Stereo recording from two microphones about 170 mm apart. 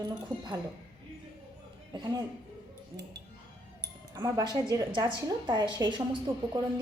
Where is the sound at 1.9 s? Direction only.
25° right (ahead or behind).